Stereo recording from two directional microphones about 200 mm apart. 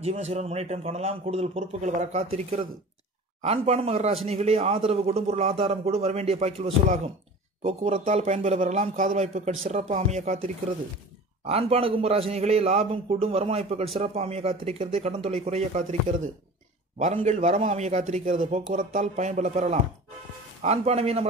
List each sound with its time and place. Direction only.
0.0 s a man's voice: 30° right (ahead or behind)
17.0 s speech: 35° right (ahead or behind)